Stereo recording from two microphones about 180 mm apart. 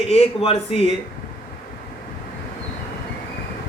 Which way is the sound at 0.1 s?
35° left (ahead or behind).